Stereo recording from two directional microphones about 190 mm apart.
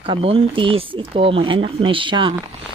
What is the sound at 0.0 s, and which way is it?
Speech, 30° right (ahead or behind).